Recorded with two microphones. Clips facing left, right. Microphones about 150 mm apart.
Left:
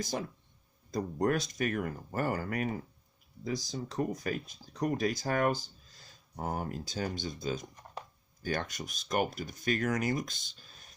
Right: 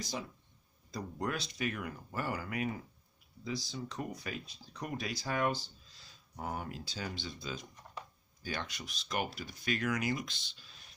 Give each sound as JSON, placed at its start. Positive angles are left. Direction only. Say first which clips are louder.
{"t": 0.0, "sound": "speech", "louder": "left 5 dB", "side_deg": 50}